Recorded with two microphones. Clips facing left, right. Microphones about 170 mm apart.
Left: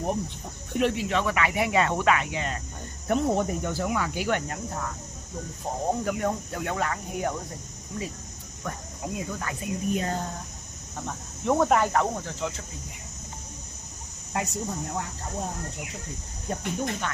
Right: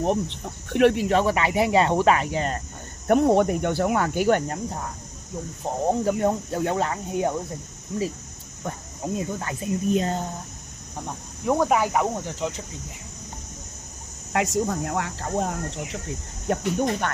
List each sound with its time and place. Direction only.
0.0 s speech: 80° right; by 1.0 s 65° right (ahead or behind)
1.0 s speech: 35° right (ahead or behind)
3.1 s cricket: 60° right (ahead or behind)
5.9 s speech: 30° right (ahead or behind)
8.6 s speech: 30° right (ahead or behind)
11.4 s speech: 5° right (ahead or behind)
14.3 s speech: 90° right
16.4 s cricket: 55° right (ahead or behind)